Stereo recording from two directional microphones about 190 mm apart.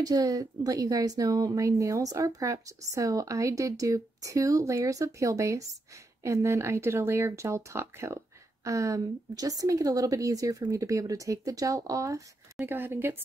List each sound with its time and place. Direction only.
0.0 s speech: 20° right (ahead or behind)